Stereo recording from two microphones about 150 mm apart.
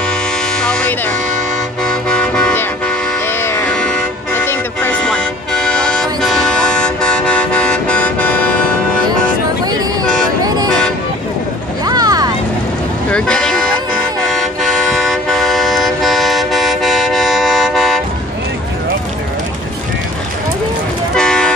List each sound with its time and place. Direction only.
0.6 s music: 5° left (ahead or behind)
11.8 s music: 25° right (ahead or behind)
13.1 s vehicle: 5° left (ahead or behind)
14.2 s toot: centre (ahead or behind)
21.1 s toot: 5° left (ahead or behind)